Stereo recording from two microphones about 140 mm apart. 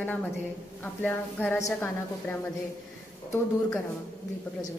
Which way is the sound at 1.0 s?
15° left (ahead or behind).